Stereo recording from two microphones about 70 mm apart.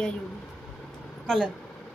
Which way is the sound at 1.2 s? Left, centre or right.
Centre.